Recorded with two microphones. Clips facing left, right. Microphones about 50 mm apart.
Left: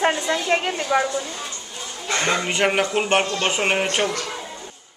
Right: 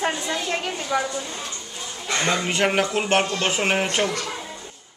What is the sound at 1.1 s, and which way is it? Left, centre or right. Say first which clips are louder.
A man's voice: left 3 dB; centre.